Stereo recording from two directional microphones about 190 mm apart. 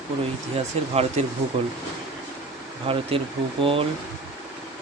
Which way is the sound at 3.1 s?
30° right (ahead or behind).